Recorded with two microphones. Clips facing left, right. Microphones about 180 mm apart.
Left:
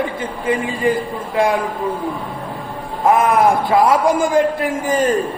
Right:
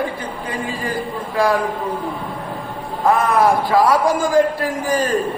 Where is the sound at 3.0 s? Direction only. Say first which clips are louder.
Left 2 dB; 20° left (ahead or behind).